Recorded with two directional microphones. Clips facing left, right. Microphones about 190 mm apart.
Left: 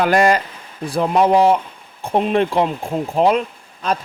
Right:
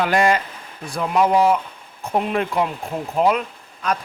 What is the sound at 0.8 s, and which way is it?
Speech, 30° left (ahead or behind).